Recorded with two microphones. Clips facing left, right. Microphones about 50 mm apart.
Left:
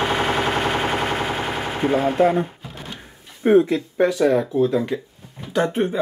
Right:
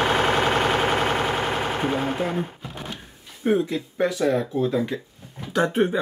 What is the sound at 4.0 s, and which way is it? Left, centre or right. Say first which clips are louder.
Speech: left 4 dB; centre.